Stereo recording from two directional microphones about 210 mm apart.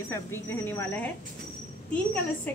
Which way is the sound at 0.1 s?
10° left (ahead or behind).